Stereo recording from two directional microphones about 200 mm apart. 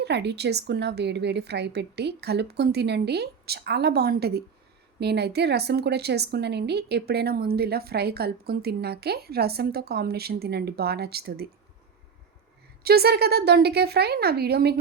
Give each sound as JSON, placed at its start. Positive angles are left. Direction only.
{"t": 0.0, "sound": "a woman's voice", "side_deg": -55}
{"t": 12.8, "sound": "a woman's voice", "side_deg": -50}